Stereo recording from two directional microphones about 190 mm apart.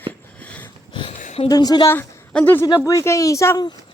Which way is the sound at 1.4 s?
20° left (ahead or behind).